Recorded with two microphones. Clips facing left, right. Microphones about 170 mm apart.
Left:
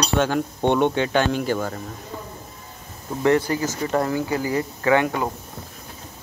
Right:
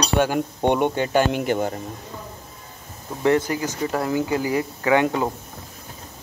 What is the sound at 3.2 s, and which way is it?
Speech, 20° right (ahead or behind).